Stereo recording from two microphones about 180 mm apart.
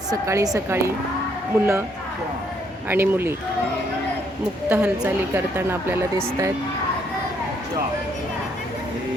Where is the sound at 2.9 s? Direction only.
10° right (ahead or behind).